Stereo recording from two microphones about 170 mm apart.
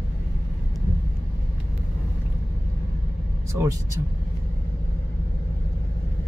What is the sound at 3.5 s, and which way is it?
Speech, 15° right (ahead or behind).